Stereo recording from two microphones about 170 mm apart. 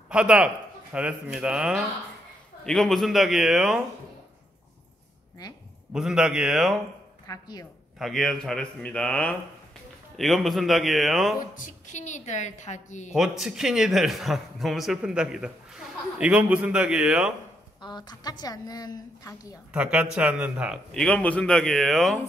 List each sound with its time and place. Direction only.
0.1 s a man's voice: 5° right (ahead or behind)
5.9 s a man's voice: 5° right (ahead or behind)
7.2 s a woman's voice: 25° left (ahead or behind)
8.0 s a man's voice: centre (ahead or behind)
11.5 s a woman's voice: 50° left (ahead or behind)
13.1 s a man's voice: centre (ahead or behind)
17.7 s a woman's voice: 25° left (ahead or behind)
19.7 s a man's voice: 5° right (ahead or behind)